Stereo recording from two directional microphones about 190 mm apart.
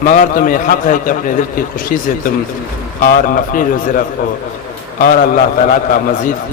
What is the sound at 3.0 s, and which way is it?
Speech, 45° left (ahead or behind).